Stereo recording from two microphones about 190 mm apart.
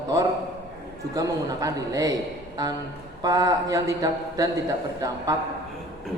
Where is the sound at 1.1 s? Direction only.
20° right (ahead or behind).